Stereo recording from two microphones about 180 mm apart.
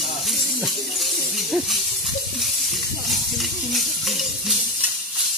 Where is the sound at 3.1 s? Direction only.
Centre (ahead or behind).